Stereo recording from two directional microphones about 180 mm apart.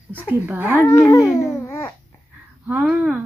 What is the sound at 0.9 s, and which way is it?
Speech, 15° left (ahead or behind).